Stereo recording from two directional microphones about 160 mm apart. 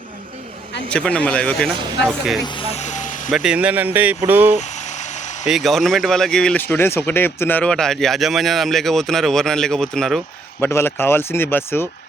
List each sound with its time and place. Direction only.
0.9 s speech: 5° left (ahead or behind)
2.4 s speech: 35° left (ahead or behind); by 3.3 s 55° left (ahead or behind)
3.3 s speech: 5° right (ahead or behind)
5.5 s speech: centre (ahead or behind)
10.6 s speech: 15° left (ahead or behind)